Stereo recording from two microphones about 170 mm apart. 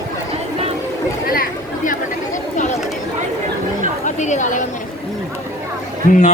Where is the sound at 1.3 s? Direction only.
55° left (ahead or behind).